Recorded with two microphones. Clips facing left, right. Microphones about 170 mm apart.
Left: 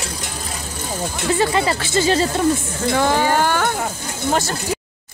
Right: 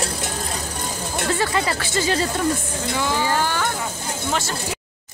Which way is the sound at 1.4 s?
25° left (ahead or behind).